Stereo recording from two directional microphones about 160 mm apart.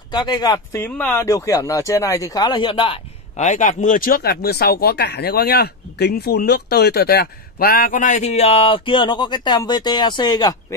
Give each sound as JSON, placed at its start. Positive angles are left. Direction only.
{"t": 0.1, "sound": "speech", "side_deg": 25}
{"t": 0.8, "sound": "speech", "side_deg": 10}
{"t": 3.3, "sound": "speech", "side_deg": 50}